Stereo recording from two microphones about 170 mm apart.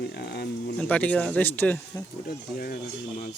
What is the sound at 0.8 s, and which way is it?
Speech, 10° left (ahead or behind).